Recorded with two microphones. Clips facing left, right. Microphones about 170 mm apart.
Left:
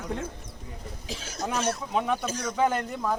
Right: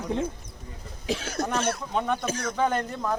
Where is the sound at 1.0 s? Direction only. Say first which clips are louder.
Right 8 dB; 65° right (ahead or behind).